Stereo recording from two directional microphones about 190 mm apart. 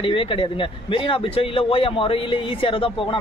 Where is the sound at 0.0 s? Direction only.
25° left (ahead or behind).